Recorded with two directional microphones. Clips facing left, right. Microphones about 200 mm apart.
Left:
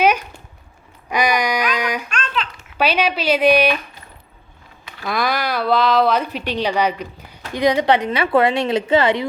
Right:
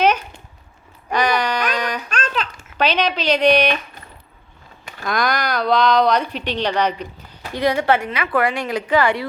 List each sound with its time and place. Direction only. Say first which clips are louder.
0.0 s a sound: left 1 dB; 10° left (ahead or behind)
2.0 s babbling: right 1 dB; 40° right (ahead or behind)
2.7 s speech: left 1 dB; 10° left (ahead or behind)
5.0 s speech: even; 5° left (ahead or behind); by 9.2 s 20° left (ahead or behind)